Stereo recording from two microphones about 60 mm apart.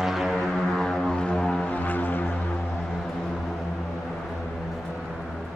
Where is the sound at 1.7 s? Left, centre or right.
Left.